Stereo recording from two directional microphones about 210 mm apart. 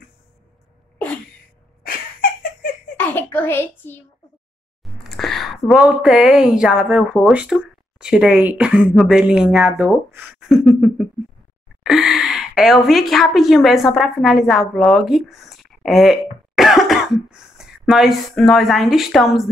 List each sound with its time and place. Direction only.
1.8 s giggle: 45° left (ahead or behind)
3.0 s a child's voice: 10° left (ahead or behind)